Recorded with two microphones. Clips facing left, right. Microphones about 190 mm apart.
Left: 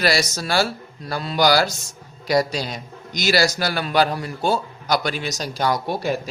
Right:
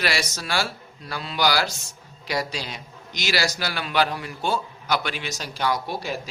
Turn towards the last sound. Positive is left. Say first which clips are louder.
# left 4 dB
turn(degrees=45)  # may be behind; listen again after turning